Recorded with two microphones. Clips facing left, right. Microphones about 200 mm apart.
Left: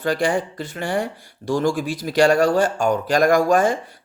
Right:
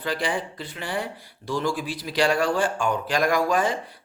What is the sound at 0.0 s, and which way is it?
Speech, 45° left (ahead or behind).